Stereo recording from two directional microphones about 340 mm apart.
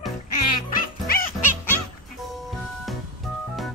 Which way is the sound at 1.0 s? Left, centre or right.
Left.